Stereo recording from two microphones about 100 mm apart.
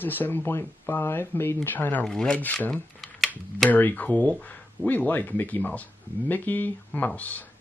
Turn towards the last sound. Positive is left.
turn(degrees=15)  # may be behind; listen again after turning